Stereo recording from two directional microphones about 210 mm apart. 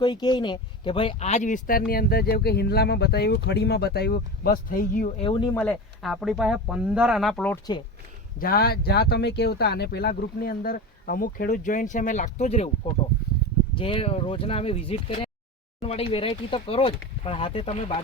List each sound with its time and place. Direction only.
0.0 s speech: 20° left (ahead or behind); by 5.1 s 40° left (ahead or behind)
5.2 s speech: 25° left (ahead or behind)
5.5 s speech: centre (ahead or behind)
8.4 s speech: 45° left (ahead or behind); by 18.0 s 25° left (ahead or behind)